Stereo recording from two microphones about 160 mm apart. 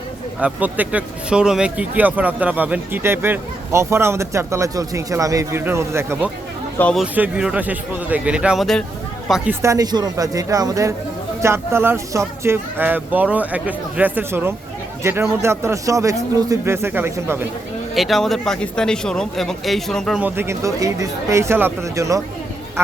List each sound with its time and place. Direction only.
0.3 s speech: 10° right (ahead or behind)
6.7 s speech: 10° left (ahead or behind)
7.0 s speech: 5° right (ahead or behind)
9.5 s speech: 20° right (ahead or behind)
17.9 s a man's voice: centre (ahead or behind)
20.2 s speech: 15° right (ahead or behind)